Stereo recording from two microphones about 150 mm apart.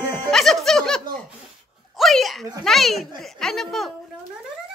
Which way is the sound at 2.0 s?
Centre (ahead or behind).